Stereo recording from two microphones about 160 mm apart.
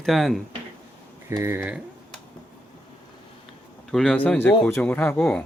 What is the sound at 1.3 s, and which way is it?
Speech, 15° right (ahead or behind).